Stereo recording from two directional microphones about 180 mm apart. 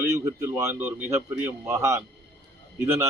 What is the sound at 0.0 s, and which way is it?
A man's voice, 15° right (ahead or behind).